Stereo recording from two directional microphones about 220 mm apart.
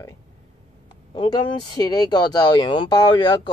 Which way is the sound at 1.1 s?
20° left (ahead or behind).